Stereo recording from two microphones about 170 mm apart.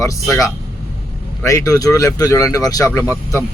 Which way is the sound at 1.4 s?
20° left (ahead or behind).